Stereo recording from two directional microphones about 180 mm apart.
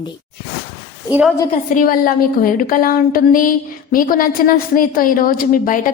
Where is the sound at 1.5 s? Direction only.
50° left (ahead or behind).